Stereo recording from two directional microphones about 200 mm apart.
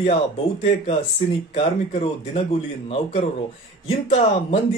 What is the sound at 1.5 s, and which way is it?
Speech, 35° left (ahead or behind).